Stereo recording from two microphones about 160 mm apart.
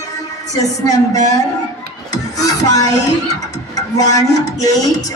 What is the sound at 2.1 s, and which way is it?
Child singing, 25° left (ahead or behind).